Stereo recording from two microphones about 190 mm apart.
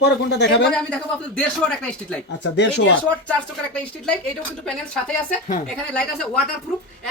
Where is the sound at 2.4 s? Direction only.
70° left (ahead or behind).